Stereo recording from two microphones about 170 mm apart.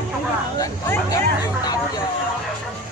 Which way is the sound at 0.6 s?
20° left (ahead or behind).